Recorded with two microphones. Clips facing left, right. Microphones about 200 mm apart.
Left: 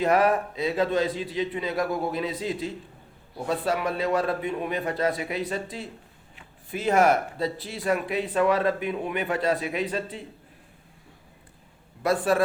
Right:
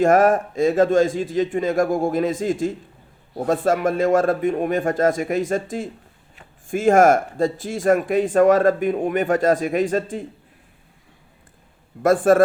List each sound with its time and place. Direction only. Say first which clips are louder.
0.0 s speech: right 6 dB; 45° right (ahead or behind)
12.0 s speech: right 8 dB; 50° right (ahead or behind)